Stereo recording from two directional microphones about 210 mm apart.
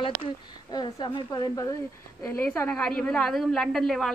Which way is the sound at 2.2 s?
10° left (ahead or behind).